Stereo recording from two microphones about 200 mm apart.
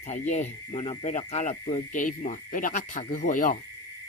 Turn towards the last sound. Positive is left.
turn(degrees=40)  # may be behind; listen again after turning